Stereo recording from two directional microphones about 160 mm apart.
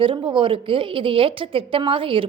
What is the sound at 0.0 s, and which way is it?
A woman's voice, 30° right (ahead or behind).